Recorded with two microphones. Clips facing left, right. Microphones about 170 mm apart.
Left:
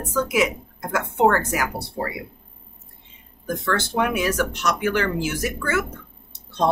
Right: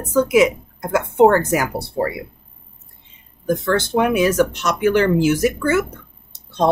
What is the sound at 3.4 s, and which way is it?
Speech, 20° right (ahead or behind).